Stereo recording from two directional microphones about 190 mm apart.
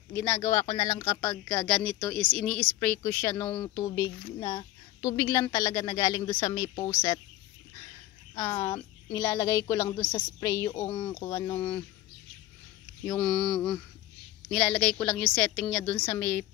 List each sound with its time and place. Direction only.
0.1 s a woman's voice: 15° left (ahead or behind)
8.4 s a woman's voice: 15° left (ahead or behind)
13.0 s a woman's voice: 5° left (ahead or behind)